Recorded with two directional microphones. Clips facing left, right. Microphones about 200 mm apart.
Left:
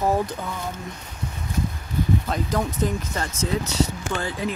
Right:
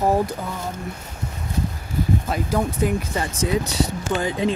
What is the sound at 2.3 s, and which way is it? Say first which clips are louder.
Speech: right 2 dB; 10° right (ahead or behind).